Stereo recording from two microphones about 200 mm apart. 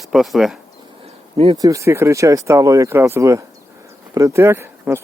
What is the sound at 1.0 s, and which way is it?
Speech, 30° right (ahead or behind).